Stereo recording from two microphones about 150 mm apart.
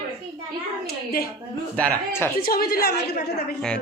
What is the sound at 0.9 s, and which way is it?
Speech, 90° left.